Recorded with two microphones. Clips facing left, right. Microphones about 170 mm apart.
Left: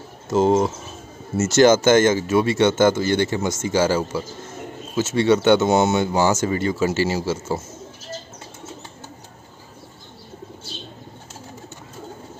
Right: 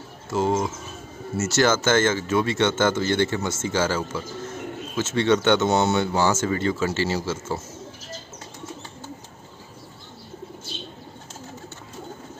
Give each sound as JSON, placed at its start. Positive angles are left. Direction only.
{"t": 0.3, "sound": "speech", "side_deg": 25}
{"t": 1.4, "sound": "speech", "side_deg": 20}